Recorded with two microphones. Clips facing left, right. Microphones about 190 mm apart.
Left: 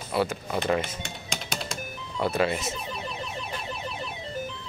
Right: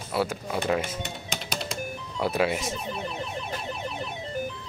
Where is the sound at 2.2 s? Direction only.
10° right (ahead or behind).